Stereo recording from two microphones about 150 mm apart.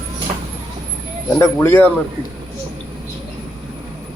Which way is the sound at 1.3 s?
15° left (ahead or behind).